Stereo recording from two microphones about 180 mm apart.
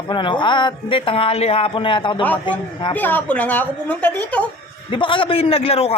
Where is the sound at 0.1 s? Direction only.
25° left (ahead or behind).